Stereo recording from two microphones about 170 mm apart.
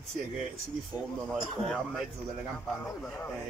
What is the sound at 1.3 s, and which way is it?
Speech, centre (ahead or behind).